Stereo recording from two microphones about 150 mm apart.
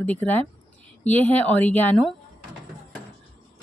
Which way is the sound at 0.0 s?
10° left (ahead or behind).